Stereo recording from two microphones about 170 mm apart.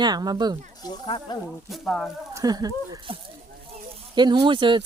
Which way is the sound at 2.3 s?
20° right (ahead or behind).